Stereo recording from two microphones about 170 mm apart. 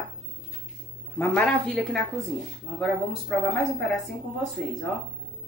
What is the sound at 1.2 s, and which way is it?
Speech, 5° left (ahead or behind).